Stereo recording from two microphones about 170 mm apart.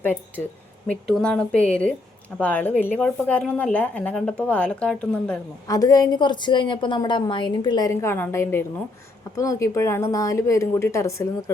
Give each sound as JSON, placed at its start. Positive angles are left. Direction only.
{"t": 0.0, "sound": "a woman's voice", "side_deg": 10}
{"t": 5.6, "sound": "a woman's voice", "side_deg": 20}